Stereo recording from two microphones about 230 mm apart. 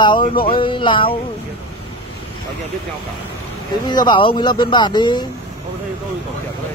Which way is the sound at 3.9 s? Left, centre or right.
Centre.